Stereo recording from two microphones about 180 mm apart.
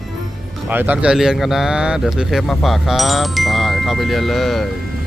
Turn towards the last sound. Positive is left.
turn(degrees=0)  # may be behind; listen again after turning